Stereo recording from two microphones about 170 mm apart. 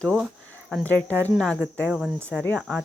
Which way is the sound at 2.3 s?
5° left (ahead or behind).